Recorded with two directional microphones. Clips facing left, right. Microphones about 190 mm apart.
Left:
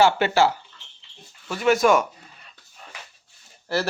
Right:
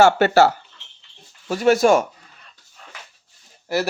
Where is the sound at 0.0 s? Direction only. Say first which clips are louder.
Right 4 dB; 45° right (ahead or behind).